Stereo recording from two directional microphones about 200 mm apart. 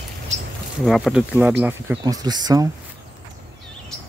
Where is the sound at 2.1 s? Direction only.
20° right (ahead or behind).